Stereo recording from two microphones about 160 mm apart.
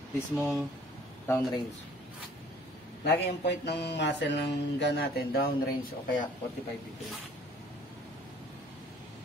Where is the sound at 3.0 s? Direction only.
90° left.